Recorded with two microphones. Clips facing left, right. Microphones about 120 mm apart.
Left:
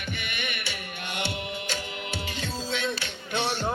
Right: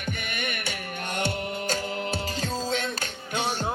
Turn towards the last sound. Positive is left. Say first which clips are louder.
# even
turn(degrees=-40)  # may be behind; listen again after turning